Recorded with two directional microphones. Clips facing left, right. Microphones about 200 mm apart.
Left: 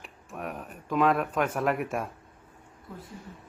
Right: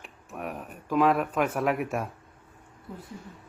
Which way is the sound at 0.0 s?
Centre (ahead or behind).